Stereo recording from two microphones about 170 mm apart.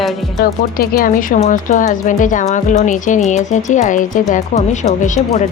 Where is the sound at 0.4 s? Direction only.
60° left (ahead or behind).